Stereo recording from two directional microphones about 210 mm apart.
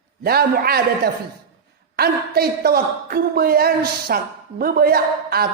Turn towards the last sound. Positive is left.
turn(degrees=-45)  # may be behind; listen again after turning